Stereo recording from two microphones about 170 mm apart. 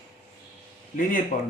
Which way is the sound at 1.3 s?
50° left (ahead or behind).